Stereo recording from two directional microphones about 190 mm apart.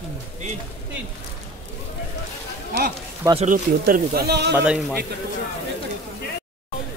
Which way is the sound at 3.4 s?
45° right (ahead or behind).